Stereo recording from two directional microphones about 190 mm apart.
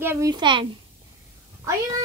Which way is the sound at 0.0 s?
15° right (ahead or behind).